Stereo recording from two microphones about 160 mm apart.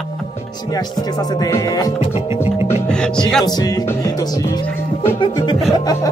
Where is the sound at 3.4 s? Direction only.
25° left (ahead or behind).